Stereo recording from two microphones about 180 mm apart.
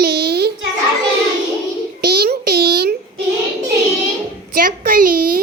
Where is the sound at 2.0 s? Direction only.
60° right (ahead or behind).